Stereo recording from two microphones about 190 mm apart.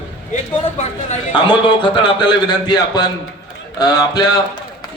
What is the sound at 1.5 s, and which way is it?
A man's voice, 25° left (ahead or behind).